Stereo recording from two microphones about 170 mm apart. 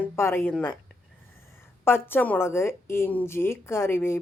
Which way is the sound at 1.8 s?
15° left (ahead or behind).